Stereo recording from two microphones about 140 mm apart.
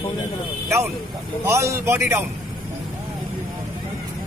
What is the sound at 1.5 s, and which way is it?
Speech, 20° right (ahead or behind).